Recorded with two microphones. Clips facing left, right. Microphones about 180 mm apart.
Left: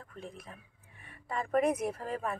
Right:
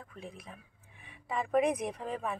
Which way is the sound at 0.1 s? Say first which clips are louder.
Left 2 dB; centre (ahead or behind).